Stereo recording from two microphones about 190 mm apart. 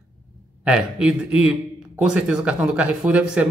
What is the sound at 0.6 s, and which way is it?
A man's voice, 5° right (ahead or behind).